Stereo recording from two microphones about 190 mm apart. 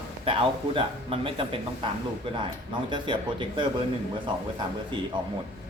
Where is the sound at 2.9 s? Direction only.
25° right (ahead or behind).